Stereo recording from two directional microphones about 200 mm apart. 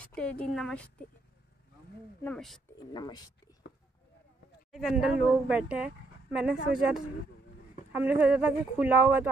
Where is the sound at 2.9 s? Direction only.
20° left (ahead or behind).